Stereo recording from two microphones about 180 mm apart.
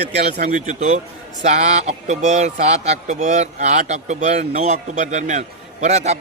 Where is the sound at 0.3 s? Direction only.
45° right (ahead or behind).